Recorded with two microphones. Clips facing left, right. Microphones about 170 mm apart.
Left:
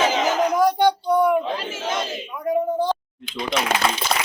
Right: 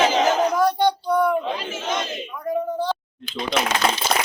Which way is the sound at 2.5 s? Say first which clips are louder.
Left 3 dB; 15° left (ahead or behind).